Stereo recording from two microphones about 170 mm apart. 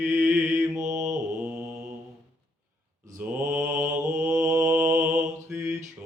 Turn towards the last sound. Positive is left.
turn(degrees=-10)  # may be behind; listen again after turning